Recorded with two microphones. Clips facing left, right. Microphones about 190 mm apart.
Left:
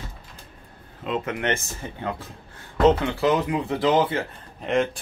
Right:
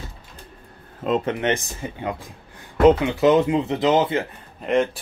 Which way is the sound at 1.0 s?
40° right (ahead or behind).